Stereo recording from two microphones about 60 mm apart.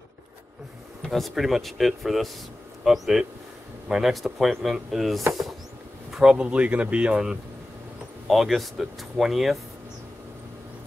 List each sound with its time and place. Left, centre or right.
1.0 s speech: centre
6.4 s speech: right
8.3 s speech: centre